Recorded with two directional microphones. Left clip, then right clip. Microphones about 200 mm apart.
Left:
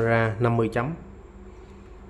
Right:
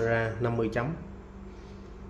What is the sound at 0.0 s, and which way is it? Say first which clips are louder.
Speech: left 5 dB; 20° left (ahead or behind).